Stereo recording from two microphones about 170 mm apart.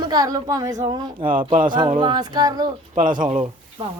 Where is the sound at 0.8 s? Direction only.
30° right (ahead or behind).